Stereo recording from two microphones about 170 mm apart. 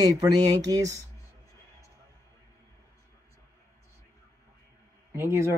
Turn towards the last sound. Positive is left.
turn(degrees=-15)  # may be behind; listen again after turning